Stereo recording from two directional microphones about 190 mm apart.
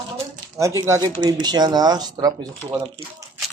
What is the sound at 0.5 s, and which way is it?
Speech, 15° right (ahead or behind).